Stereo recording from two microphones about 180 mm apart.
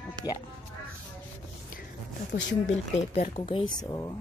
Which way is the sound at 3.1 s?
35° left (ahead or behind).